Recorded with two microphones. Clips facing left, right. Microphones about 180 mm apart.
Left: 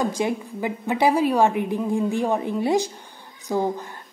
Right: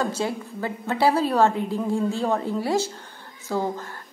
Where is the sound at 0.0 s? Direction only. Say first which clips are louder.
Left 2 dB; 15° left (ahead or behind).